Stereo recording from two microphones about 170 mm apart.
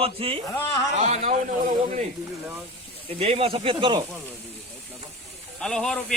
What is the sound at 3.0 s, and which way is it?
Speech, 35° right (ahead or behind).